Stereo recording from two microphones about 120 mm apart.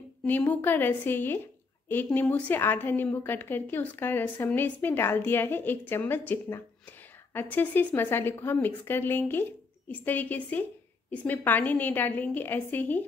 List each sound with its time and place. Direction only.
0.2 s a woman's voice: 15° left (ahead or behind)